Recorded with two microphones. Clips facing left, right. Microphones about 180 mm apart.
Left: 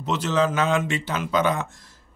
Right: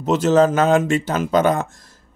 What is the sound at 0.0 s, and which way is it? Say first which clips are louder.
Speech: right 8 dB; 45° right (ahead or behind).